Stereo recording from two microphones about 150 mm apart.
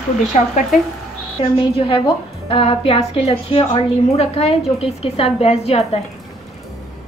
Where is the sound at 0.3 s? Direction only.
50° left (ahead or behind).